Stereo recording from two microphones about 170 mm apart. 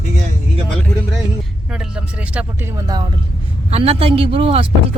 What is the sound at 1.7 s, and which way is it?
Speech, 5° right (ahead or behind).